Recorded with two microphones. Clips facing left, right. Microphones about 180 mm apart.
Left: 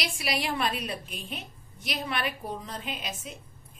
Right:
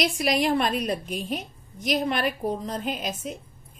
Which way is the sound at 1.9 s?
45° right (ahead or behind).